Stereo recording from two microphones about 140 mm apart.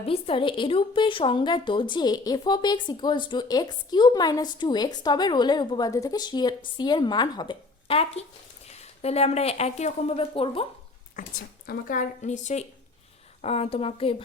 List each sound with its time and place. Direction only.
0.0 s a woman's voice: 40° left (ahead or behind)
11.2 s speech: 85° left; by 12.6 s 60° left (ahead or behind)
13.4 s a woman's voice: 45° left (ahead or behind)